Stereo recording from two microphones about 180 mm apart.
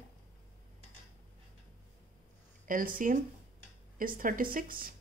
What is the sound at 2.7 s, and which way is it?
Speech, 50° right (ahead or behind).